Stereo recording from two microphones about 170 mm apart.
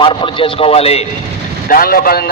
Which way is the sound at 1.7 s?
60° left (ahead or behind).